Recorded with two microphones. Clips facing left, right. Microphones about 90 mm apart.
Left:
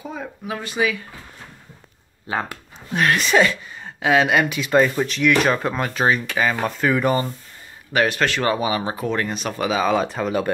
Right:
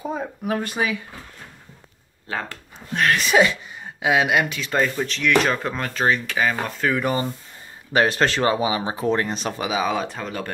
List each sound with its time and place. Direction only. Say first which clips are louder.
0.0 s speech: right 4 dB; 35° right (ahead or behind)
0.6 s speech: left 4 dB; 50° right (ahead or behind)
2.2 s speech: left 4 dB; 15° left (ahead or behind)
3.0 s speech: even; centre (ahead or behind)
4.5 s speech: left 5 dB; 10° left (ahead or behind)
7.9 s speech: right 1 dB; 30° right (ahead or behind)
9.6 s speech: left 5 dB; 10° right (ahead or behind); by 10.5 s 10° left (ahead or behind)